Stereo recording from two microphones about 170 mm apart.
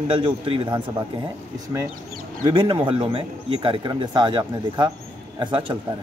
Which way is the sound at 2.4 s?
30° right (ahead or behind).